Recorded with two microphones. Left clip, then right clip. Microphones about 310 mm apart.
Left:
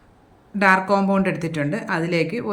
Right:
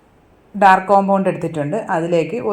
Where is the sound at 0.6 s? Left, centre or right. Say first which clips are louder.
Right 6 dB; centre.